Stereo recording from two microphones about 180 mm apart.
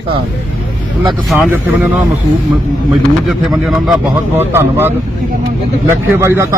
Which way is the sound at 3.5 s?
Centre (ahead or behind).